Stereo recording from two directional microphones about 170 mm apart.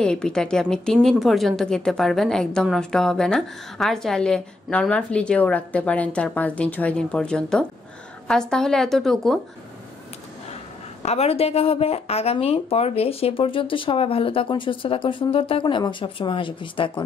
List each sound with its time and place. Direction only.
0.0 s a woman's voice: 5° left (ahead or behind)
11.0 s speech: 40° left (ahead or behind)